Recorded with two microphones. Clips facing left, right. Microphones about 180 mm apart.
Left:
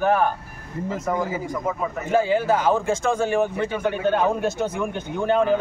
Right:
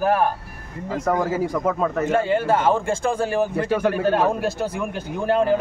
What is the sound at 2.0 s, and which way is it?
Speech, centre (ahead or behind).